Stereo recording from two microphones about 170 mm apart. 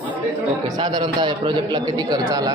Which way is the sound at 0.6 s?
25° right (ahead or behind).